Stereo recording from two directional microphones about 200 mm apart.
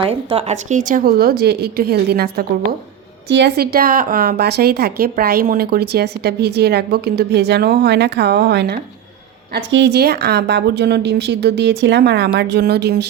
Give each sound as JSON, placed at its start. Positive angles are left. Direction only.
{"t": 0.0, "sound": "a woman's voice", "side_deg": -30}